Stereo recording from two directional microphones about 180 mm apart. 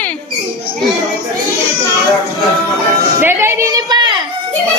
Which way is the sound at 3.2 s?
15° right (ahead or behind).